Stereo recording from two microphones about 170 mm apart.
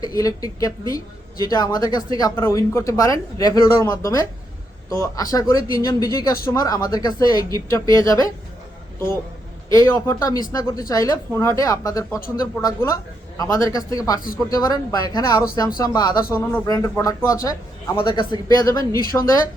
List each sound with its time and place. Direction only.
0.0 s speech: 20° left (ahead or behind)
9.6 s speech: 20° left (ahead or behind)